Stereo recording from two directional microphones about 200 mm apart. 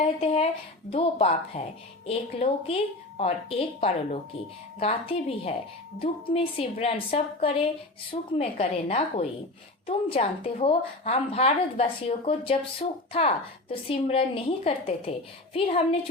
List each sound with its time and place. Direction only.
0.0 s a woman's voice: 30° left (ahead or behind)